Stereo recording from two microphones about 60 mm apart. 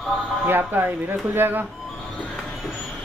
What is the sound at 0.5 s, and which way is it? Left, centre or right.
Speech, right.